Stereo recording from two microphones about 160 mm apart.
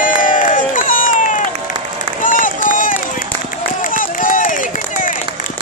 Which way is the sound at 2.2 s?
55° left (ahead or behind).